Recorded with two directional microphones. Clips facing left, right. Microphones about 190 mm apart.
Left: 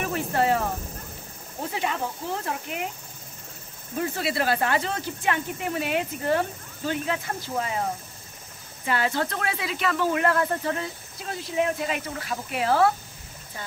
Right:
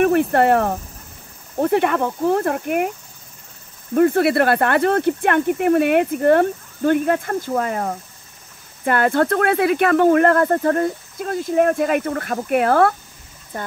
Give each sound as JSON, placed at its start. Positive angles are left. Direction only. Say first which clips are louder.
{"t": 0.0, "sound": "speech", "louder": "right 10 dB", "side_deg": -60}
{"t": 3.9, "sound": "speech", "louder": "right 13 dB", "side_deg": -60}